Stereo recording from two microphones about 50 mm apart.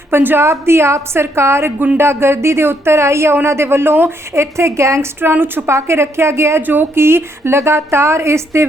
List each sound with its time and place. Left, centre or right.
0.1 s a woman's voice: right
0.4 s a woman's voice: right
3.3 s a woman's voice: right
4.4 s a woman's voice: right
5.6 s a woman's voice: right
6.6 s a woman's voice: right
6.9 s a woman's voice: right